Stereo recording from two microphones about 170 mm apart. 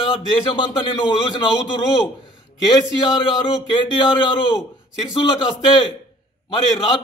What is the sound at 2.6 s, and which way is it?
A man's voice, 25° left (ahead or behind).